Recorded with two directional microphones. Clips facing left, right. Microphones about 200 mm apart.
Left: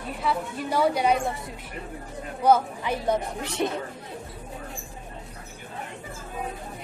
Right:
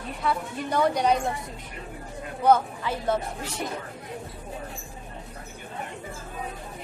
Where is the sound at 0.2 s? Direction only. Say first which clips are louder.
Even; 5° left (ahead or behind).